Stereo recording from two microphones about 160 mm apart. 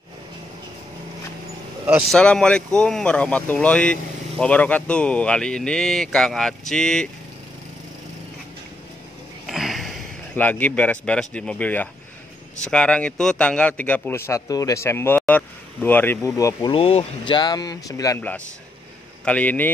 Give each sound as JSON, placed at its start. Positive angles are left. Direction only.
{"t": 2.0, "sound": "speech", "side_deg": 5}
{"t": 9.5, "sound": "a sound", "side_deg": 0}
{"t": 10.3, "sound": "speech", "side_deg": 10}
{"t": 16.7, "sound": "speech", "side_deg": 35}